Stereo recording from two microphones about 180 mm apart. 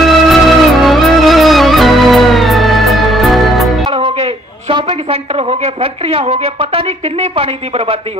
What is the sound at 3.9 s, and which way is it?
A woman's voice, 35° right (ahead or behind).